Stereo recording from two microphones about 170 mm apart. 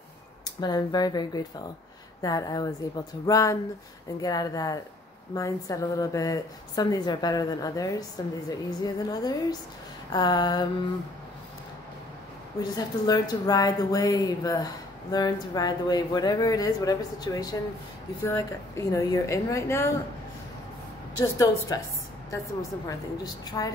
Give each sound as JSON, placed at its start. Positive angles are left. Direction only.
{"t": 0.6, "sound": "a woman's voice", "side_deg": 25}
{"t": 12.5, "sound": "a woman's voice", "side_deg": 25}
{"t": 21.2, "sound": "a woman's voice", "side_deg": 20}